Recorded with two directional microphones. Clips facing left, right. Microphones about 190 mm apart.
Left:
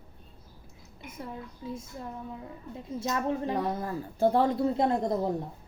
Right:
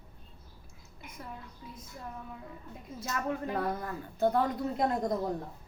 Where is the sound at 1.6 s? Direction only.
25° left (ahead or behind).